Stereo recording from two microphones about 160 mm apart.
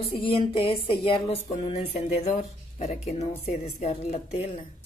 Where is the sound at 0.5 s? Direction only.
35° left (ahead or behind).